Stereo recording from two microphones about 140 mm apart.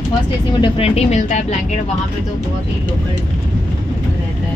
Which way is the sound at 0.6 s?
45° left (ahead or behind).